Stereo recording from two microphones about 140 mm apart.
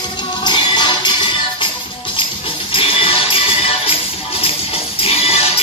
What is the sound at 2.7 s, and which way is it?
Music, 40° left (ahead or behind).